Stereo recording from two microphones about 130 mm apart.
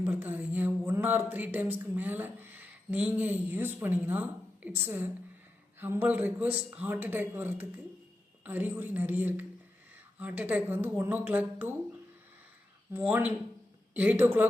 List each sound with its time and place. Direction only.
0.0 s a man's voice: 15° right (ahead or behind)
12.9 s a man's voice: 15° right (ahead or behind)